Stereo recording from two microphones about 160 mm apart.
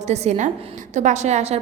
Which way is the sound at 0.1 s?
45° right (ahead or behind).